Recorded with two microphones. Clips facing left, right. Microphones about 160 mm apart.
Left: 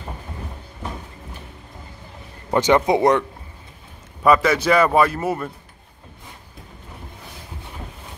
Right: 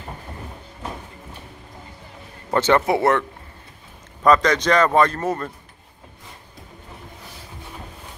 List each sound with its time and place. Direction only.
2.5 s speech: 15° left (ahead or behind)